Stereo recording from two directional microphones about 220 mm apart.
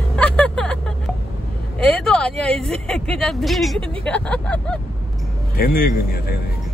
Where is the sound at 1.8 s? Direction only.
5° left (ahead or behind).